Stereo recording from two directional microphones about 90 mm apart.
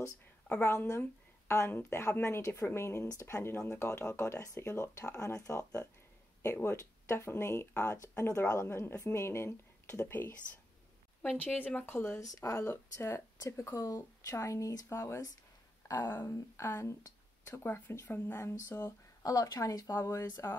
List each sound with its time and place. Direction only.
0.6 s speech: 30° left (ahead or behind)
11.4 s speech: 15° left (ahead or behind)
12.2 s speech: 40° left (ahead or behind)
12.6 s speech: 25° left (ahead or behind)
19.2 s speech: 40° left (ahead or behind)